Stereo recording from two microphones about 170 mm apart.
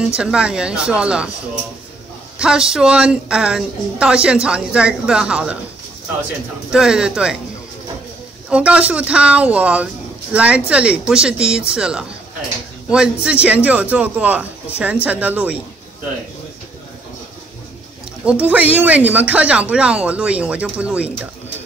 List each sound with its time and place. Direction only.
0.1 s a woman's voice: 5° right (ahead or behind)
2.3 s a woman's voice: 5° right (ahead or behind)
6.7 s a woman's voice: 5° right (ahead or behind)
8.5 s a woman's voice: 5° right (ahead or behind)
18.5 s speech: 10° right (ahead or behind)